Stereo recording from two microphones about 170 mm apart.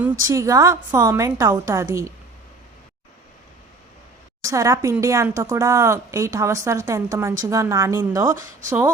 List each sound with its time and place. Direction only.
0.3 s a woman's voice: 20° right (ahead or behind)
4.4 s a woman's voice: 20° right (ahead or behind)